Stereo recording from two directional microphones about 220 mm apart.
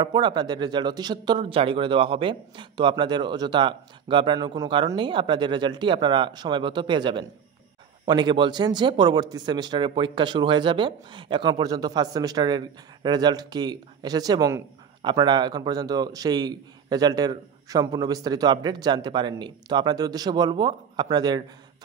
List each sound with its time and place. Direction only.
0.0 s a man's voice: 20° right (ahead or behind)